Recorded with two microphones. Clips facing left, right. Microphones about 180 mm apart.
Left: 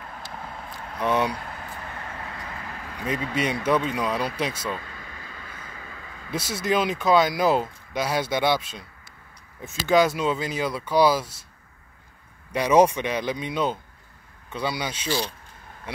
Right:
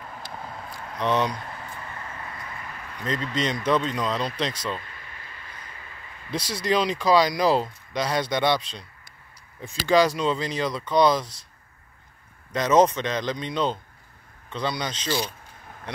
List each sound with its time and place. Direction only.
0.2 s vehicle: 25° left (ahead or behind)
0.9 s speech: 10° left (ahead or behind)
3.0 s speech: 10° left (ahead or behind)
6.3 s speech: 5° left (ahead or behind)
12.5 s speech: 10° left (ahead or behind)